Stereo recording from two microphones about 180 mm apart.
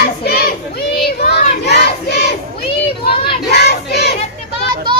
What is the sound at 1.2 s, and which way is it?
Crowd, 65° left (ahead or behind).